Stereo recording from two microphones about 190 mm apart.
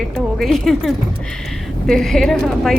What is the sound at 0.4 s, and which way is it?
Speech, centre (ahead or behind).